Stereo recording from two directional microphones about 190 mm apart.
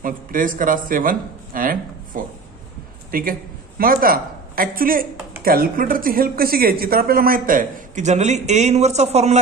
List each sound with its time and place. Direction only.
0.0 s a woman's voice: 45° right (ahead or behind)